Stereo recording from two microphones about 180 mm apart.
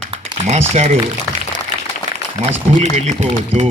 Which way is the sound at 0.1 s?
35° right (ahead or behind).